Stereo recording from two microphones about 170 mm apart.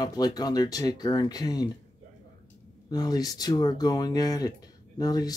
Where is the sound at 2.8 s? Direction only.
20° left (ahead or behind).